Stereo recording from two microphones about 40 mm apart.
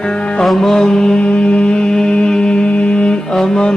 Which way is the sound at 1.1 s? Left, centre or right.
Left.